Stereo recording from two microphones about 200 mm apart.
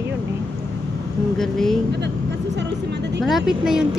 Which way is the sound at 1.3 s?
Centre (ahead or behind).